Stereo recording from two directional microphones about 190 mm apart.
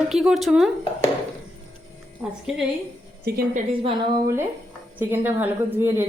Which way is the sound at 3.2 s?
50° right (ahead or behind).